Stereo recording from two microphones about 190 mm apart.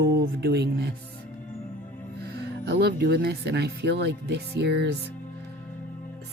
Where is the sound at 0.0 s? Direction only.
60° right (ahead or behind).